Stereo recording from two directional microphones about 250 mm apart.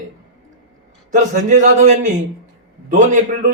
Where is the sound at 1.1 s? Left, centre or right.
Right.